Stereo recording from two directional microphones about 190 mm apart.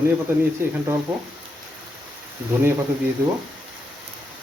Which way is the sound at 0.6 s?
15° right (ahead or behind).